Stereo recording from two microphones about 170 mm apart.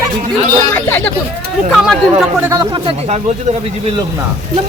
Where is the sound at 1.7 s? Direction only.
Centre (ahead or behind).